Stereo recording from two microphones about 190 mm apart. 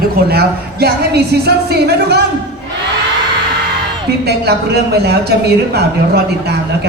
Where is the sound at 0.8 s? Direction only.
60° right (ahead or behind).